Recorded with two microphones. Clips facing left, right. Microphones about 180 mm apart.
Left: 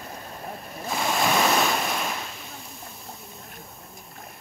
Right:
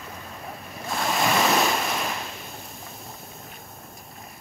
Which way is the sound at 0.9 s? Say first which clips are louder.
Even; centre (ahead or behind).